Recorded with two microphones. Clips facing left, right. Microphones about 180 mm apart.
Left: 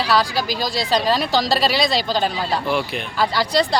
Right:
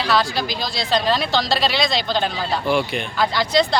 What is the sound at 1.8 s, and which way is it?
Speech, 40° left (ahead or behind).